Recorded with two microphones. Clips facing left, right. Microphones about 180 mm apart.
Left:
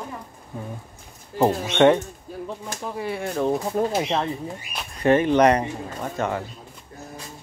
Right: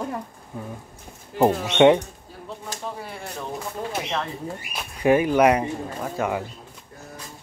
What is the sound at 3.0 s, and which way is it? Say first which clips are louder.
Speech: left 8 dB; 60° left (ahead or behind).